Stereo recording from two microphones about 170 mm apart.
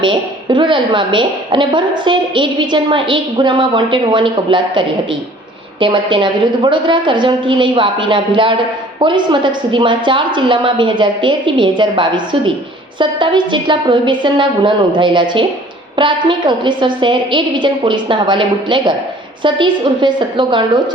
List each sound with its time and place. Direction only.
0.0 s a woman's voice: 30° right (ahead or behind)
5.8 s a woman's voice: 30° right (ahead or behind)